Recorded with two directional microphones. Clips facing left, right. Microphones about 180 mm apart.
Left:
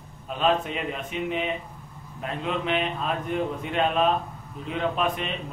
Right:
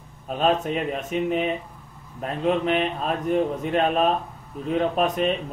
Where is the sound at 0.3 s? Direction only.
45° right (ahead or behind).